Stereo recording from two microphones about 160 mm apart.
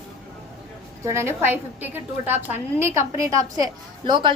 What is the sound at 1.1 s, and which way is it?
A woman's voice, 15° right (ahead or behind).